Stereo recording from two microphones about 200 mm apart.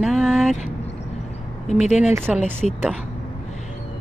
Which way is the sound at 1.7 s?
35° left (ahead or behind).